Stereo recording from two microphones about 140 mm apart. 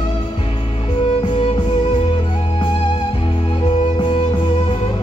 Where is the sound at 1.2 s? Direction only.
45° left (ahead or behind).